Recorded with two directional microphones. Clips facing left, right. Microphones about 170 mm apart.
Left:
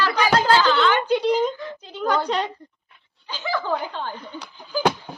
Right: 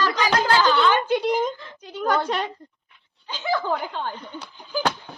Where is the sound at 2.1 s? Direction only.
20° left (ahead or behind).